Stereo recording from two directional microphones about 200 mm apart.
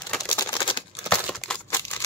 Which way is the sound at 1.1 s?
5° left (ahead or behind).